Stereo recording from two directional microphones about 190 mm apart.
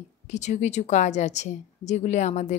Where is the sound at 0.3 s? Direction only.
35° left (ahead or behind).